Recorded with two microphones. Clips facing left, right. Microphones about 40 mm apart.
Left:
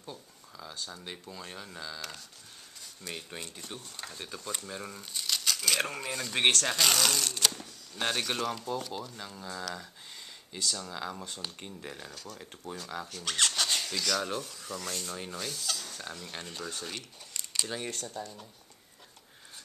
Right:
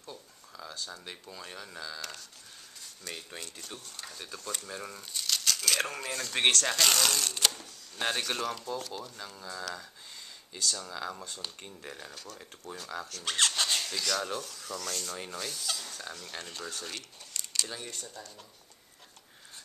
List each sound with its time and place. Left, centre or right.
0.6 s speech: centre
4.6 s speech: centre
14.9 s rub: centre
15.1 s rub: centre
15.9 s speech: centre